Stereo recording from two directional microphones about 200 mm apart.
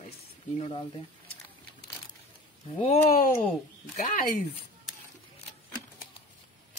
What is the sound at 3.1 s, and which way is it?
Speech, 45° left (ahead or behind).